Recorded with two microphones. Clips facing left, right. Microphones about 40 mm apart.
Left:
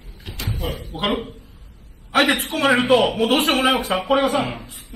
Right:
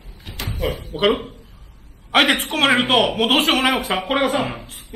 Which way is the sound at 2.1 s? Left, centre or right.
Right.